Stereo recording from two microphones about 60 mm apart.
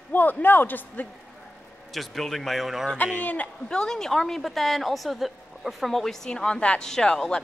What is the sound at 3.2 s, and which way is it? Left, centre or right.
Speech, left.